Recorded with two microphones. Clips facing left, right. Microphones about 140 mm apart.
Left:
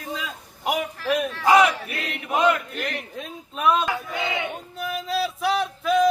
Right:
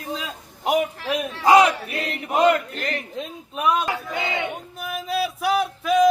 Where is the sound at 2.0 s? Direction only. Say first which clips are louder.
Right 3 dB; 45° right (ahead or behind).